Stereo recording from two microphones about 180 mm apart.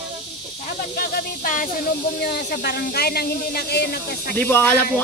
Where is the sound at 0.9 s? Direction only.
55° left (ahead or behind).